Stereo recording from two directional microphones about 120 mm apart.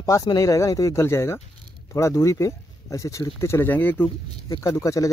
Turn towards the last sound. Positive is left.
turn(degrees=25)  # may be behind; listen again after turning